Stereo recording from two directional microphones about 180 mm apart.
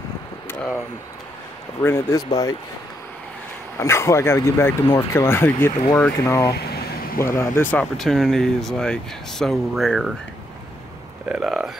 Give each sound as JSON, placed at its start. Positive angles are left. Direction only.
{"t": 1.8, "sound": "speech", "side_deg": 15}
{"t": 3.8, "sound": "speech", "side_deg": 15}
{"t": 11.2, "sound": "speech", "side_deg": -5}